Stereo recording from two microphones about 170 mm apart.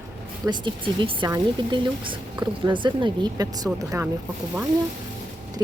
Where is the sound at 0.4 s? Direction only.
30° right (ahead or behind).